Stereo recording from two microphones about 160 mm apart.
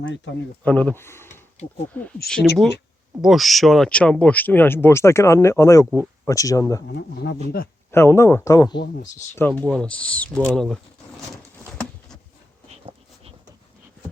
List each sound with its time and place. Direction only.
0.6 s speech: 10° left (ahead or behind)
2.2 s speech: centre (ahead or behind); by 6.8 s 20° left (ahead or behind)
6.8 s a man's voice: 90° left
7.9 s speech: 15° left (ahead or behind)
9.3 s speech: 10° left (ahead or behind)